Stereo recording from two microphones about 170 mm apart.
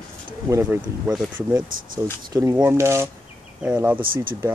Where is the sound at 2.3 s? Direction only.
15° right (ahead or behind).